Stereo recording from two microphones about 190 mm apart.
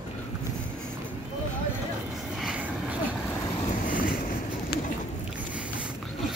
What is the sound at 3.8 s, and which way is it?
Boat, 50° left (ahead or behind).